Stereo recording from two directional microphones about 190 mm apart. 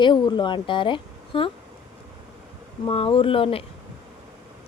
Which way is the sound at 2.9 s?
30° left (ahead or behind).